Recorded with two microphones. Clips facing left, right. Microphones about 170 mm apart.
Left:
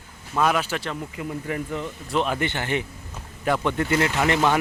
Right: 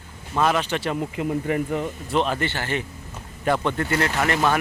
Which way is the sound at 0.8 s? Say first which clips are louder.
Right 6 dB; 25° right (ahead or behind).